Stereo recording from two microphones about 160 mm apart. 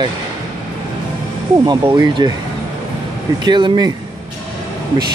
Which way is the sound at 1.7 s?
30° right (ahead or behind).